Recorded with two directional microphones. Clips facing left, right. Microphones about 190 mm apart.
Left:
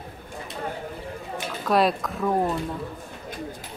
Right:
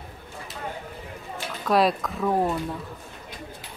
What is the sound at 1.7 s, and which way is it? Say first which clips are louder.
Speech: even; centre (ahead or behind).